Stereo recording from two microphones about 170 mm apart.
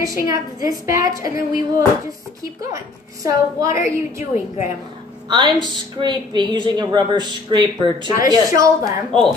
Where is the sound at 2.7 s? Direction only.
20° right (ahead or behind).